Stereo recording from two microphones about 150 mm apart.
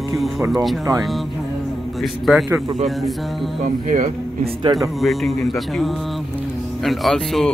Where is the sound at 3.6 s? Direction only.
55° right (ahead or behind).